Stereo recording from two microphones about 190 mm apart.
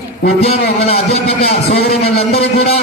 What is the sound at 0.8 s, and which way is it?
A man's voice, 35° left (ahead or behind).